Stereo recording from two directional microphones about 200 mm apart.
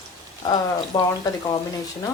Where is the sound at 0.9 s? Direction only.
20° left (ahead or behind).